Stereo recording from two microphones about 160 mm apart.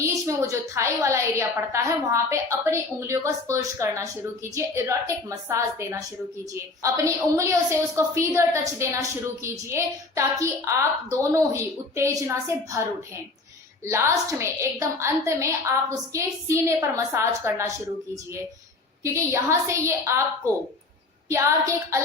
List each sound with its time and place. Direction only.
0.0 s a woman's voice: 20° right (ahead or behind)